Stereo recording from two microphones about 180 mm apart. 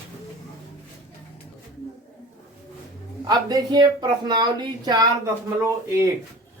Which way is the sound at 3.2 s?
20° right (ahead or behind).